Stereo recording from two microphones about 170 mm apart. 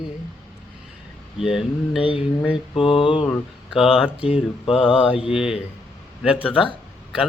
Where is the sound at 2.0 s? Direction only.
30° left (ahead or behind).